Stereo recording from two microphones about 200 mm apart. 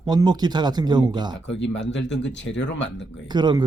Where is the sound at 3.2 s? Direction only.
20° right (ahead or behind).